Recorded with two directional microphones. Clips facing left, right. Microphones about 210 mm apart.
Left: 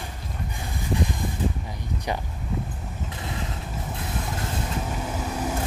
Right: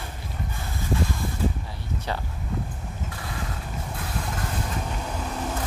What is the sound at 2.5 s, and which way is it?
Vehicle, 5° left (ahead or behind).